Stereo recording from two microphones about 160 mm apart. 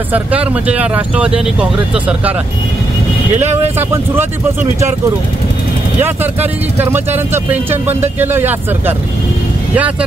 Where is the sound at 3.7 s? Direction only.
15° right (ahead or behind).